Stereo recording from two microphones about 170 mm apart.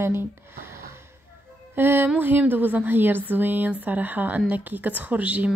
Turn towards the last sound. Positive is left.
turn(degrees=-10)  # may be behind; listen again after turning